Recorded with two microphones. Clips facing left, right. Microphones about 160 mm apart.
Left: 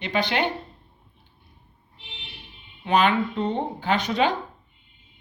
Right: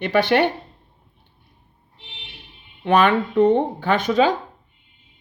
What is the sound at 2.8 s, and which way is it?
Speech, 60° right (ahead or behind).